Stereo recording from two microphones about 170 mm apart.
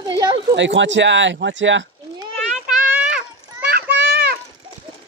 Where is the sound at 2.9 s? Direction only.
10° right (ahead or behind).